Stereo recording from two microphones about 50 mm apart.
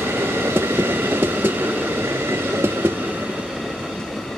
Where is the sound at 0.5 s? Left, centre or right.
Right.